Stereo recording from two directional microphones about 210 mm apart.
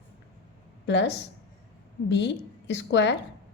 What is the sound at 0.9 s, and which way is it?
A woman's voice, 55° left (ahead or behind).